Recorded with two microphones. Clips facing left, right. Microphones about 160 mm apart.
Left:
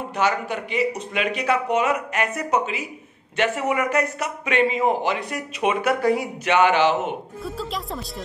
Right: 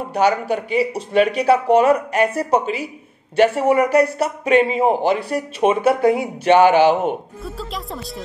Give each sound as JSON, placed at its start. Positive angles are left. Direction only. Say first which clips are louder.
{"t": 0.1, "sound": "speech", "louder": "right 6 dB", "side_deg": -35}
{"t": 5.8, "sound": "speech", "louder": "right 5 dB", "side_deg": -25}
{"t": 7.4, "sound": "speech", "louder": "left 2 dB", "side_deg": 0}